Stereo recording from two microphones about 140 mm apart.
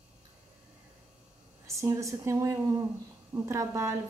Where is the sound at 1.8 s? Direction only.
20° right (ahead or behind).